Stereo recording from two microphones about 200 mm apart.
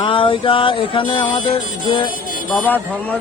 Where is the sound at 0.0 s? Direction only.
25° left (ahead or behind).